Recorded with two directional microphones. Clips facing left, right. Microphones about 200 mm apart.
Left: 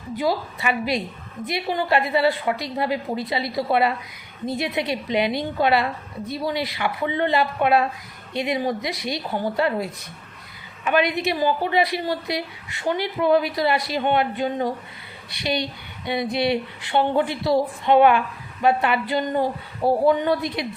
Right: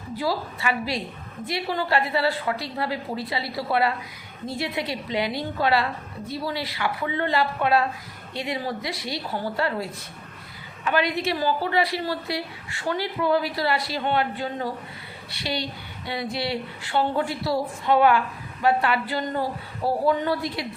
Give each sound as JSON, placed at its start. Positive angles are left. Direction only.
{"t": 0.2, "sound": "a woman's voice", "side_deg": 20}